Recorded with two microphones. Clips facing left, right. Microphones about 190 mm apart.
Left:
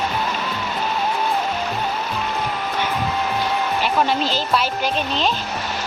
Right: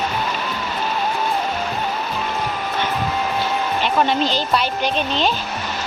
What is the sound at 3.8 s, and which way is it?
Speech, 5° left (ahead or behind).